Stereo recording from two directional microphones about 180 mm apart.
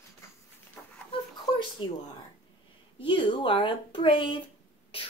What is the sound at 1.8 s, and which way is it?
Speech, 30° left (ahead or behind).